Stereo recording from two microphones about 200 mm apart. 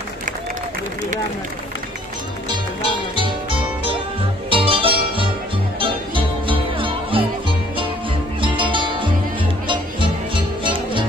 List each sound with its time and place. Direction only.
3.2 s music: 25° right (ahead or behind)
8.4 s music: 25° right (ahead or behind)